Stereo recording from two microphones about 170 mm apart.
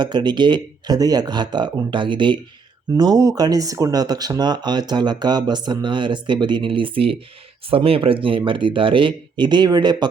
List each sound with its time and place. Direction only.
0.0 s speech: 25° right (ahead or behind)